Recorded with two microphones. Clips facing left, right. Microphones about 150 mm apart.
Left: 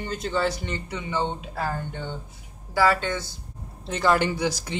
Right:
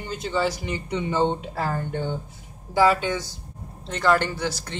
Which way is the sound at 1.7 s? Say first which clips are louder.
Right 5 dB; 50° right (ahead or behind).